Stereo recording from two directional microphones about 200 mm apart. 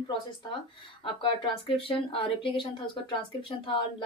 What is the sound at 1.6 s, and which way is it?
Speech, 25° left (ahead or behind).